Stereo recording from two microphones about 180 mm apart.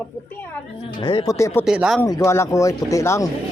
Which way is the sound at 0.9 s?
25° left (ahead or behind).